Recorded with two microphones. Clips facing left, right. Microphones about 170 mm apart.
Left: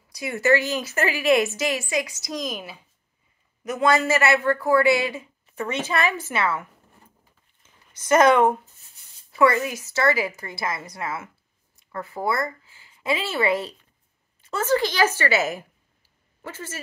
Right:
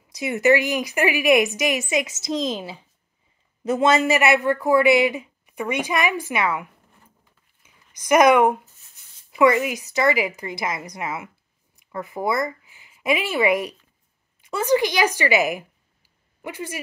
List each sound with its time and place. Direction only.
0.1 s a woman's voice: 20° right (ahead or behind)